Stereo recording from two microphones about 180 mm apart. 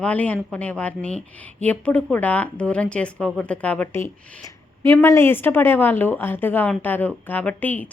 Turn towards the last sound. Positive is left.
turn(degrees=10)  # may be behind; listen again after turning